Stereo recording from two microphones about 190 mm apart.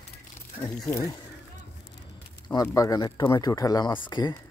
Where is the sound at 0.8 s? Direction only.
20° left (ahead or behind).